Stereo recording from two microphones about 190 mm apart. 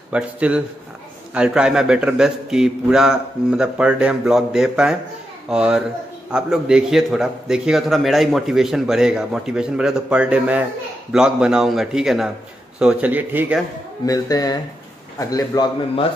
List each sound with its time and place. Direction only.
0.1 s a man's voice: 5° right (ahead or behind)
14.0 s a man's voice: 20° left (ahead or behind)